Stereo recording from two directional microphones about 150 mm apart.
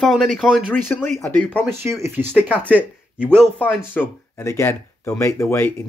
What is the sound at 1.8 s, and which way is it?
Speech, 20° right (ahead or behind).